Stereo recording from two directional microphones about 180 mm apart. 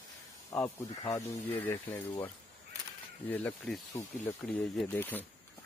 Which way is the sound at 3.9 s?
15° left (ahead or behind).